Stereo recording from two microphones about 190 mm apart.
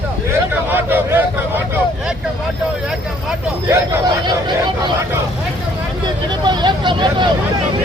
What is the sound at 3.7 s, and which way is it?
Speech, 20° right (ahead or behind).